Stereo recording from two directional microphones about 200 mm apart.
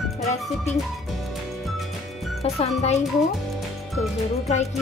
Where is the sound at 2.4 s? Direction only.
30° left (ahead or behind).